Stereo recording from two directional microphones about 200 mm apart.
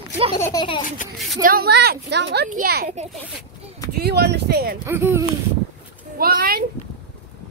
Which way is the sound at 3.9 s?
55° right (ahead or behind).